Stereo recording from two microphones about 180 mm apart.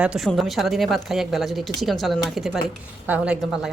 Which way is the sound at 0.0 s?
5° right (ahead or behind).